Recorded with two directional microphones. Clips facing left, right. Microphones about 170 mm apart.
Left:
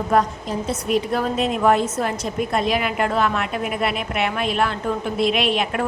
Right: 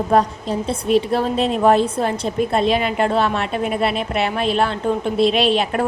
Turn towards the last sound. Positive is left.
turn(degrees=-35)  # may be behind; listen again after turning